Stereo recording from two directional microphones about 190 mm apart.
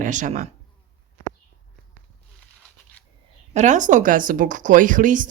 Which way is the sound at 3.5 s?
40° right (ahead or behind).